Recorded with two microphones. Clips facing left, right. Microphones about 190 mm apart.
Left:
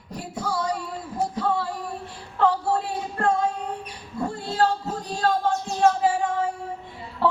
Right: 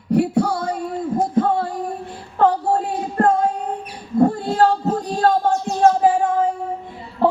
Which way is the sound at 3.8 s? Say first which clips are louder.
Right 13 dB; 50° right (ahead or behind).